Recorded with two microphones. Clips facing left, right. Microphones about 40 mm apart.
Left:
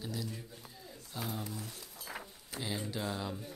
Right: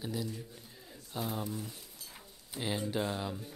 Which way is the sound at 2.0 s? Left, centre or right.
Left.